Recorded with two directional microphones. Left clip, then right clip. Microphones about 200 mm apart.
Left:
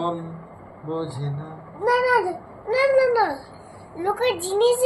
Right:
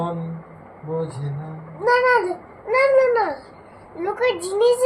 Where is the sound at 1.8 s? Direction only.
15° right (ahead or behind).